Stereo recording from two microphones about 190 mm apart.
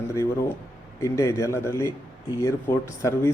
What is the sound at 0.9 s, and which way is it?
A man's voice, 15° left (ahead or behind).